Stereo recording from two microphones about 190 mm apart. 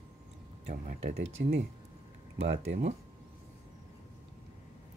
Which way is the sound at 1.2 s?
65° right (ahead or behind).